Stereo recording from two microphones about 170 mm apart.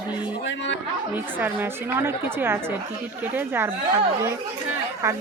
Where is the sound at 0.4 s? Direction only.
90° left.